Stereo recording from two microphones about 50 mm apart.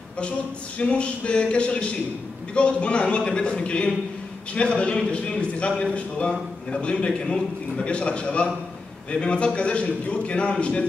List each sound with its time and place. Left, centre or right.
0.7 s a man's voice: left